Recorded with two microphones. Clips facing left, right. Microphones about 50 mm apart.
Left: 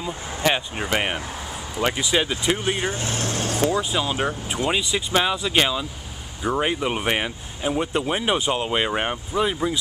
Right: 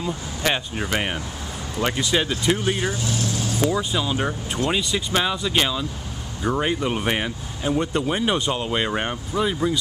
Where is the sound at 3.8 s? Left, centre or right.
Centre.